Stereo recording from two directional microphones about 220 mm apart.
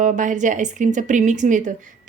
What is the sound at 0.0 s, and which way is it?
Speech, 35° right (ahead or behind).